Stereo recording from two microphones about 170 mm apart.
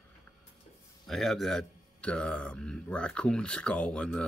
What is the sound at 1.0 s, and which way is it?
Speech, centre (ahead or behind).